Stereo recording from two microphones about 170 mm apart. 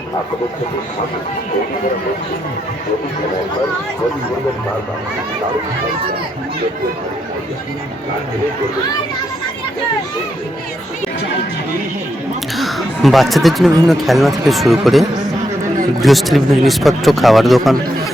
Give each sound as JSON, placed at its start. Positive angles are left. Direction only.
{"t": 12.5, "sound": "a man's voice", "side_deg": 0}